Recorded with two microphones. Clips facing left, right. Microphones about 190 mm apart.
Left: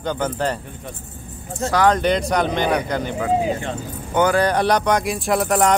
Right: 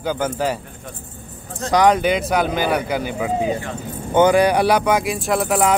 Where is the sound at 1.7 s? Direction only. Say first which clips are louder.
Right 2 dB; 15° right (ahead or behind).